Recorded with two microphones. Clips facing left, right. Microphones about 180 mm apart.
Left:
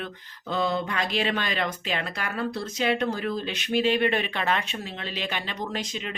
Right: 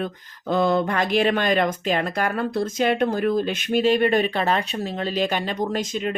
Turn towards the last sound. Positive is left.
turn(degrees=-45)  # may be behind; listen again after turning